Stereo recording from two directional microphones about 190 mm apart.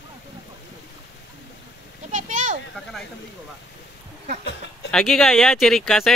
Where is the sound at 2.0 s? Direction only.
40° right (ahead or behind).